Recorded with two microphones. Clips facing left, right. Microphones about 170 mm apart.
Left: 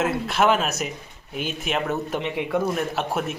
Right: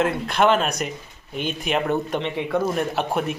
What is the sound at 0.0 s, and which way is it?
Speech, 5° left (ahead or behind).